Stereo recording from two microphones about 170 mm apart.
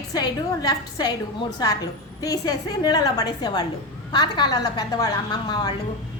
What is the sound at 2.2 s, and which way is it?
A woman's voice, 20° left (ahead or behind).